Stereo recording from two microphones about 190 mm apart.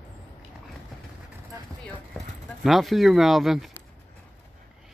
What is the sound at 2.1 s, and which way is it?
Speech, centre (ahead or behind).